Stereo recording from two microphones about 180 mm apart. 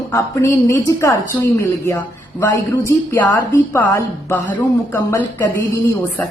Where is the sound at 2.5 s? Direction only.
15° left (ahead or behind).